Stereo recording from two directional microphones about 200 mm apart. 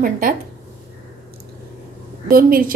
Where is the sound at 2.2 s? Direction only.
45° right (ahead or behind).